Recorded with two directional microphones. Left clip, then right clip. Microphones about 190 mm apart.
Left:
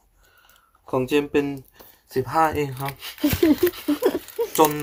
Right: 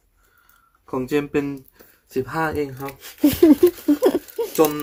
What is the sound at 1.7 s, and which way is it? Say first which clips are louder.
Speech: even; 10° right (ahead or behind).